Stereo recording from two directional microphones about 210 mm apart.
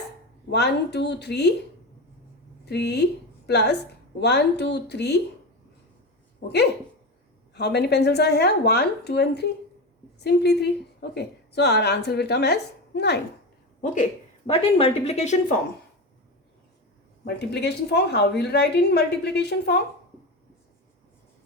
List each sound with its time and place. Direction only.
0.5 s a woman's voice: 55° left (ahead or behind)
2.6 s a woman's voice: 55° left (ahead or behind)
7.5 s a woman's voice: 50° left (ahead or behind)
13.8 s a woman's voice: 35° left (ahead or behind)
17.2 s a woman's voice: 50° left (ahead or behind)